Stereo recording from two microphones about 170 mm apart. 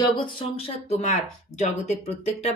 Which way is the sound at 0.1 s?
35° left (ahead or behind).